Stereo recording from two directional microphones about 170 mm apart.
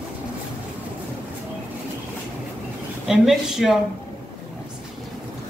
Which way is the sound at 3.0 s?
Centre (ahead or behind).